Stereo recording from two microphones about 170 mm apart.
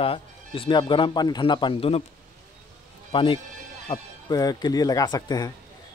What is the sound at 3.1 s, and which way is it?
Speech, 30° left (ahead or behind).